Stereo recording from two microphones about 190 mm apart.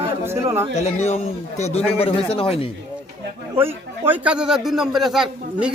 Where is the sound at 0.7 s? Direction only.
35° left (ahead or behind).